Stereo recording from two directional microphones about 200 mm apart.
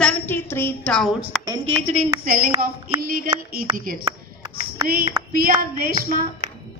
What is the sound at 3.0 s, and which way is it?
Speech, 45° right (ahead or behind).